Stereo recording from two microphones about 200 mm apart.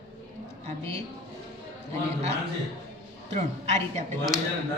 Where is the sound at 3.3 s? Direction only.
35° right (ahead or behind).